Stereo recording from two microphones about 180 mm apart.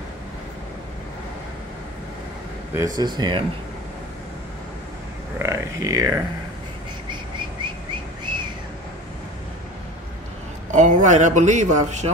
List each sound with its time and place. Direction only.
2.7 s speech: 20° right (ahead or behind)
5.4 s speech: 15° right (ahead or behind)
10.7 s a man's voice: 45° right (ahead or behind)